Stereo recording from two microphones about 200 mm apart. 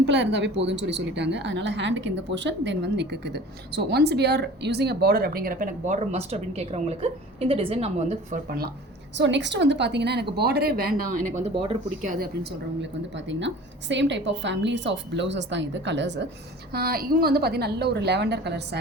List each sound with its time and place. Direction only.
0.0 s a woman's voice: 60° right (ahead or behind); by 8.4 s 35° right (ahead or behind)
8.4 s a woman's voice: 50° right (ahead or behind)
9.1 s a woman's voice: 60° right (ahead or behind); by 11.3 s 45° right (ahead or behind)
11.5 s speech: 25° right (ahead or behind)
12.0 s a woman's voice: 50° right (ahead or behind)
16.7 s a woman's voice: 50° right (ahead or behind)